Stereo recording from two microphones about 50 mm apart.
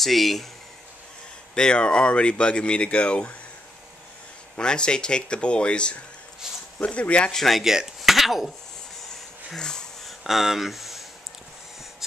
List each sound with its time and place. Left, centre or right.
0.0 s speech: centre
1.5 s speech: centre
4.6 s speech: centre
7.3 s speech: centre
7.6 s speech: centre
9.6 s speech: centre
10.0 s a sound: centre